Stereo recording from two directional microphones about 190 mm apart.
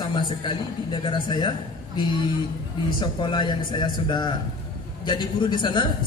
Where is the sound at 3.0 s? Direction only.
25° left (ahead or behind).